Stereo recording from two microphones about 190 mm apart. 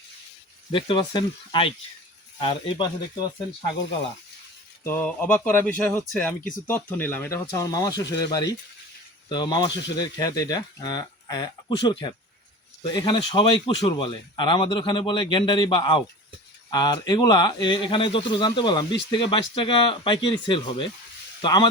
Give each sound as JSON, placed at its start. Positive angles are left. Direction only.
{"t": 0.7, "sound": "speech", "side_deg": 25}
{"t": 4.9, "sound": "speech", "side_deg": 10}